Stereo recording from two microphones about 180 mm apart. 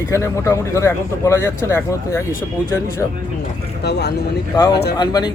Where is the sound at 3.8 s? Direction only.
65° left (ahead or behind).